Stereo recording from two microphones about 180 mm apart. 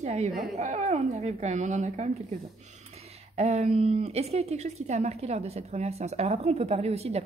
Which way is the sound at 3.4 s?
35° right (ahead or behind).